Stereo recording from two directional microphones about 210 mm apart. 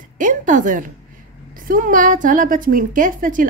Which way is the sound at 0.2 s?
40° right (ahead or behind).